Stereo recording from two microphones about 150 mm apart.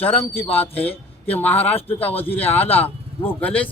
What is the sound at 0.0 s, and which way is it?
Speech, 10° left (ahead or behind).